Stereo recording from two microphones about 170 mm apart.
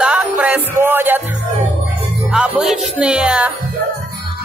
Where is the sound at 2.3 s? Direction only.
5° right (ahead or behind).